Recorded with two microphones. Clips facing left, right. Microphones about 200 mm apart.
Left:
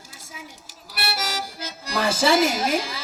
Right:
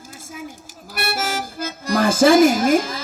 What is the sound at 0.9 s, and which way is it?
Speech, 50° right (ahead or behind).